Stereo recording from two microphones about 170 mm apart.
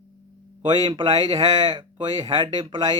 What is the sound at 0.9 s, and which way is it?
Speech, 25° right (ahead or behind).